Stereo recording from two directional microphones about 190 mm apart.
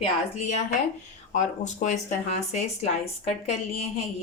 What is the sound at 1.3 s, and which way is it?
Speech, 40° left (ahead or behind).